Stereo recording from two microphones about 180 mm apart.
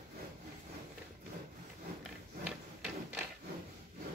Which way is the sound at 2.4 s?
5° right (ahead or behind).